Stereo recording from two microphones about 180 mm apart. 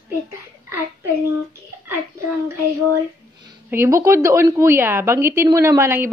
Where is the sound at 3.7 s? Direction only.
15° right (ahead or behind).